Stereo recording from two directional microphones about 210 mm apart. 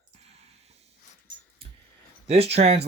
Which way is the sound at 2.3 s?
30° right (ahead or behind).